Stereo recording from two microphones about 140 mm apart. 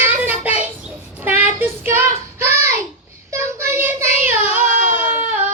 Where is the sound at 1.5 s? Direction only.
15° right (ahead or behind).